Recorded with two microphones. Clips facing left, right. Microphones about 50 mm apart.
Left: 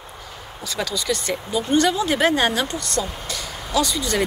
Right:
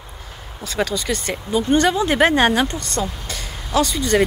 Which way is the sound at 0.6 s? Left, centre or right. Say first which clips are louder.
Right 4 dB; right.